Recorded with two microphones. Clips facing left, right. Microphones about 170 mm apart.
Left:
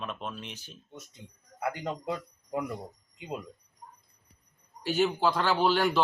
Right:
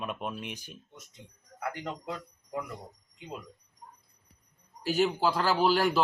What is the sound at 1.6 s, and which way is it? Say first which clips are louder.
Speech: left 3 dB; 20° left (ahead or behind).